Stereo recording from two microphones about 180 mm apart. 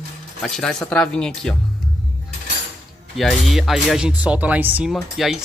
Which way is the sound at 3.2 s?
Centre (ahead or behind).